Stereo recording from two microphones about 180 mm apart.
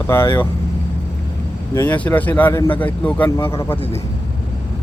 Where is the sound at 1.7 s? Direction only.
10° left (ahead or behind).